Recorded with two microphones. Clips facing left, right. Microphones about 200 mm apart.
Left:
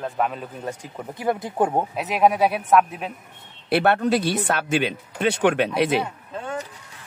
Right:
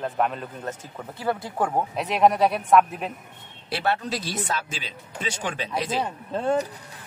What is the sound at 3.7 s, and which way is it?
Speech, 60° left (ahead or behind).